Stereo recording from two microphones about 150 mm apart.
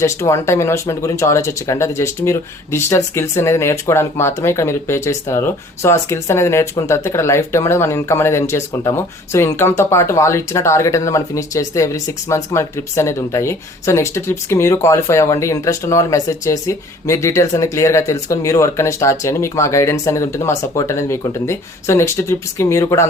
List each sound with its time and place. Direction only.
0.0 s speech: 20° left (ahead or behind)